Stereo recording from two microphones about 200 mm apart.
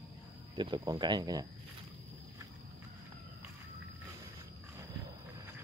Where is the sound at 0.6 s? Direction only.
20° right (ahead or behind).